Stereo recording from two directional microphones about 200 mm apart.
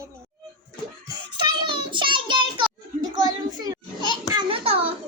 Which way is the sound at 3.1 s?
20° right (ahead or behind).